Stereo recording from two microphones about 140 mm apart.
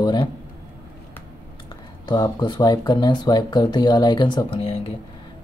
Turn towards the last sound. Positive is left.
turn(degrees=40)  # may be behind; listen again after turning